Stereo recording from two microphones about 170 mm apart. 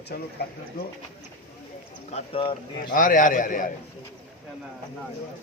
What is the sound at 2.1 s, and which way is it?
Speech, 30° left (ahead or behind).